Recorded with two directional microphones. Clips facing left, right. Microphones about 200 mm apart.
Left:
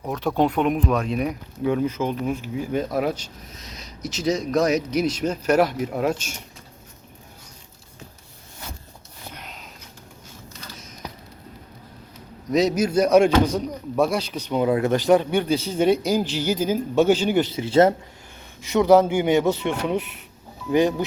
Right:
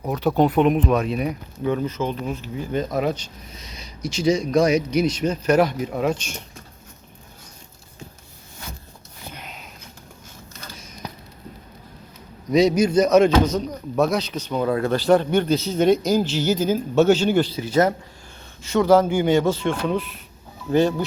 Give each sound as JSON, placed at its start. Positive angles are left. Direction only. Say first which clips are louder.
{"t": 0.1, "sound": "speech", "louder": "right 3 dB", "side_deg": 0}
{"t": 9.3, "sound": "a sound", "louder": "right 1 dB", "side_deg": -5}
{"t": 12.5, "sound": "speech", "louder": "right 3 dB", "side_deg": 0}